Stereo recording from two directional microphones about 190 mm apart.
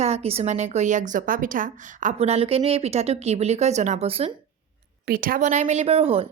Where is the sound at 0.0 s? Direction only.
35° right (ahead or behind).